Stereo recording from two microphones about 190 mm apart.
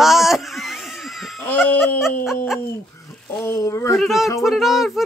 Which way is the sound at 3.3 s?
10° left (ahead or behind).